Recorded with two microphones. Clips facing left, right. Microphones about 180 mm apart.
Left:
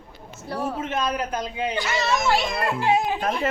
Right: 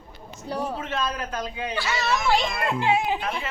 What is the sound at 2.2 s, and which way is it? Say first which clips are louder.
Speech: right 1 dB; 40° left (ahead or behind).